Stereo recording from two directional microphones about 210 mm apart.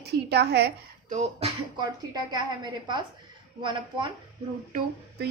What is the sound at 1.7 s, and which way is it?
A woman's voice, 20° right (ahead or behind).